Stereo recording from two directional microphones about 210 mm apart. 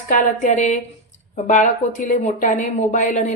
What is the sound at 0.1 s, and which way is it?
Speech, 35° left (ahead or behind).